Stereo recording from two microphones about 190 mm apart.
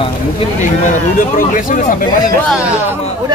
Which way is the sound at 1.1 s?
45° left (ahead or behind).